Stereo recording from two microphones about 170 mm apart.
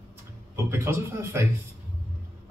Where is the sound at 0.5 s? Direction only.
15° right (ahead or behind).